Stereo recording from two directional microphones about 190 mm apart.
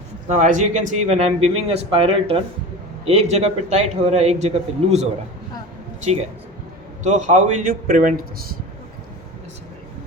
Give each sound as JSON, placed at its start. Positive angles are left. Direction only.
{"t": 0.3, "sound": "a man's voice", "side_deg": -40}
{"t": 7.0, "sound": "a man's voice", "side_deg": -40}